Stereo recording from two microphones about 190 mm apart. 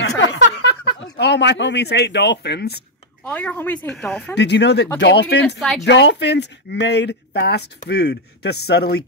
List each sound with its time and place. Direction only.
0.2 s a sound: 70° left (ahead or behind)
1.1 s speech: 65° left (ahead or behind)
3.3 s a woman's voice: 10° left (ahead or behind)
4.4 s speech: 65° left (ahead or behind)